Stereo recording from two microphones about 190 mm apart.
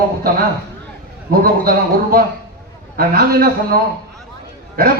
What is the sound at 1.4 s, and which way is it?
A man's voice, 50° right (ahead or behind).